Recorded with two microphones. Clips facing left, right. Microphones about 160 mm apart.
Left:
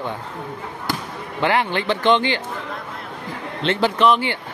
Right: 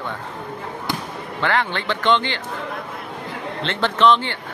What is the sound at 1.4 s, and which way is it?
Speech, 15° left (ahead or behind).